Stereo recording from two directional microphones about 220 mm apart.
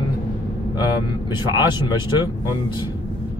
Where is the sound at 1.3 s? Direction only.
20° left (ahead or behind).